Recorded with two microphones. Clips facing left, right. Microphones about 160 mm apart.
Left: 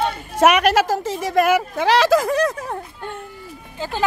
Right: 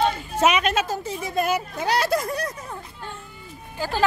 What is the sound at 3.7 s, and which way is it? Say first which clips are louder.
Speech: even; 20° left (ahead or behind).